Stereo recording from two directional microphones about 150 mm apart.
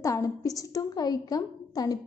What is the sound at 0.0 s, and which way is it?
A woman's voice, 20° left (ahead or behind).